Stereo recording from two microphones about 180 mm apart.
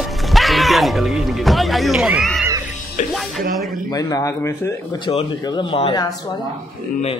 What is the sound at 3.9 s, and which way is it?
Speech, 20° left (ahead or behind).